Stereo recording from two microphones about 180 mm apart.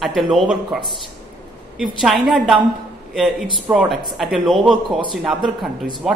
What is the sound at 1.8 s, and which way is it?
A man's voice, centre (ahead or behind).